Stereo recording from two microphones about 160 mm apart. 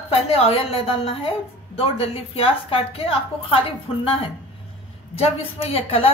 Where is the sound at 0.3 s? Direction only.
35° left (ahead or behind).